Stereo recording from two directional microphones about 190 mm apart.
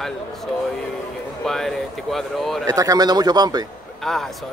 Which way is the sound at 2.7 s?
20° right (ahead or behind).